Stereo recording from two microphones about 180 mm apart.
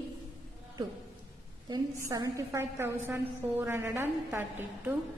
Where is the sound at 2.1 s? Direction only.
20° right (ahead or behind).